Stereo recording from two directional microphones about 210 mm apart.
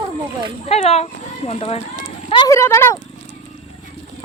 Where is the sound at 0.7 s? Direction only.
30° left (ahead or behind).